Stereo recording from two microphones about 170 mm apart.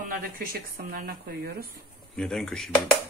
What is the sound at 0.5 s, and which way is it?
Speech, 55° right (ahead or behind).